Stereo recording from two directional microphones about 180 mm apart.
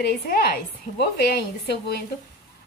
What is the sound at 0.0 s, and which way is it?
A woman's voice, 55° left (ahead or behind).